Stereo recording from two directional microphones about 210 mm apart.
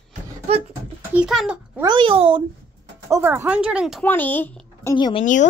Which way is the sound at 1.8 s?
20° right (ahead or behind).